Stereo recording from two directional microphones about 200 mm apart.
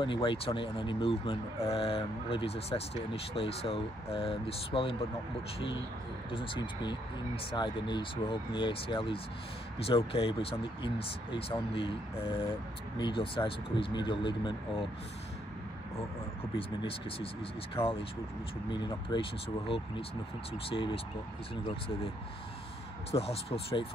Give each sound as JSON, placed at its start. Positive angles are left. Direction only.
{"t": 0.0, "sound": "speech", "side_deg": 25}
{"t": 6.3, "sound": "speech", "side_deg": 25}
{"t": 16.5, "sound": "speech", "side_deg": 25}
{"t": 18.7, "sound": "speech", "side_deg": 20}
{"t": 23.1, "sound": "speech", "side_deg": 30}